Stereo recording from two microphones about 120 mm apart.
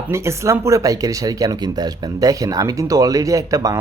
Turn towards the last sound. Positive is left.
turn(degrees=-30)  # may be behind; listen again after turning